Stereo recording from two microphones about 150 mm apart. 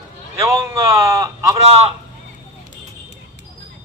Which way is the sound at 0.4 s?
20° right (ahead or behind).